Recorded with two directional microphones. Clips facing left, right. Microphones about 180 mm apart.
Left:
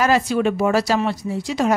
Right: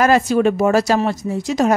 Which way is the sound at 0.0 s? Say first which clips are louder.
Right 4 dB; 45° right (ahead or behind).